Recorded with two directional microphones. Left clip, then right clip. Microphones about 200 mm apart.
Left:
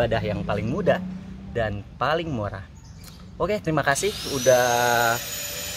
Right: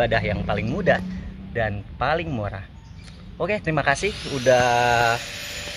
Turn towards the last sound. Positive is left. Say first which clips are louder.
# even
turn(degrees=60)  # may be behind; listen again after turning